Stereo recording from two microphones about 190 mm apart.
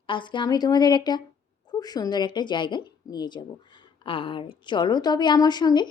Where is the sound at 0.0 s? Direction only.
25° left (ahead or behind).